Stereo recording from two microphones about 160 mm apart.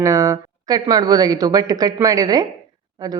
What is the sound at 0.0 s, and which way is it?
Speech, 20° right (ahead or behind).